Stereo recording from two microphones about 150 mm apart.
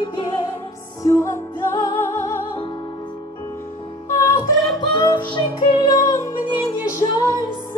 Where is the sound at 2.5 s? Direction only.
30° left (ahead or behind).